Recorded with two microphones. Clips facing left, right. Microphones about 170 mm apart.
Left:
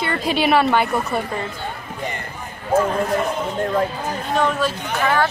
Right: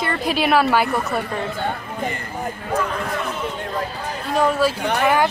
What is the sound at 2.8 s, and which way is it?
Speech, 45° left (ahead or behind).